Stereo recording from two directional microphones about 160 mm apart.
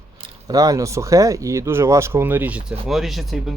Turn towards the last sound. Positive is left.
turn(degrees=0)  # may be behind; listen again after turning